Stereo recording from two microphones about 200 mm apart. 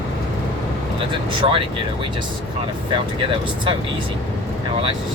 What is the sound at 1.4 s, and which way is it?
Speech, 25° right (ahead or behind).